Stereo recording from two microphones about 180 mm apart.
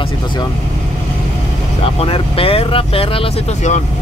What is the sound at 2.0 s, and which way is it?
Speech, 30° left (ahead or behind).